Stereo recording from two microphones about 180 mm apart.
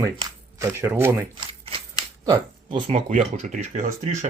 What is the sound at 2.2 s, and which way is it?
Speech, 25° right (ahead or behind).